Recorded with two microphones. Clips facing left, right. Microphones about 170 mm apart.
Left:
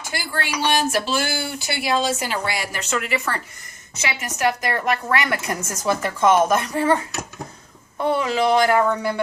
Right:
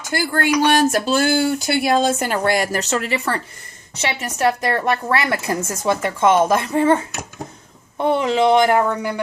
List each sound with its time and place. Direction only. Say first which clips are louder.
0.1 s a woman's voice: right 9 dB; 50° right (ahead or behind); by 9.2 s 15° right (ahead or behind)